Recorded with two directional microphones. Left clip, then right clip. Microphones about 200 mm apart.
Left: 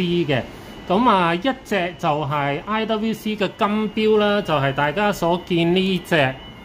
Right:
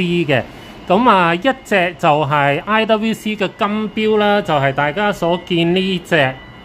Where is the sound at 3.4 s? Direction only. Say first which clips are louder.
Right 1 dB; 5° right (ahead or behind).